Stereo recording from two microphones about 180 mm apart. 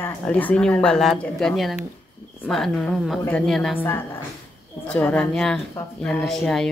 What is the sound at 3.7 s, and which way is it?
A woman's voice, 15° left (ahead or behind).